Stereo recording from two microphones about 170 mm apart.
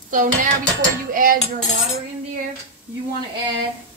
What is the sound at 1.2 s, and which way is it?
Cutlery, 55° right (ahead or behind).